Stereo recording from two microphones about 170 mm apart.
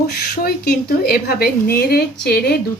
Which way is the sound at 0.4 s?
65° left (ahead or behind).